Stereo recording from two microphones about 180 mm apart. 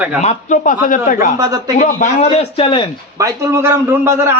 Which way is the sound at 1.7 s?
40° left (ahead or behind).